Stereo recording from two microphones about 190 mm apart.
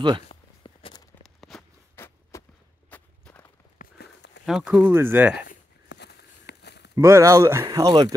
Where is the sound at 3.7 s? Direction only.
60° left (ahead or behind).